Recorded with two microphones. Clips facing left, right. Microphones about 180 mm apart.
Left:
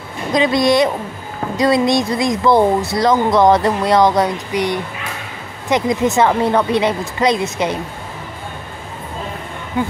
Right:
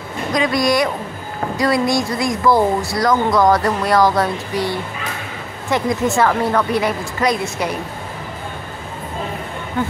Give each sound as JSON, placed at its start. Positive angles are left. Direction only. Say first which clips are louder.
{"t": 0.3, "sound": "a woman's voice", "louder": "left 3 dB", "side_deg": 25}
{"t": 9.8, "sound": "speech", "louder": "left 2 dB", "side_deg": 15}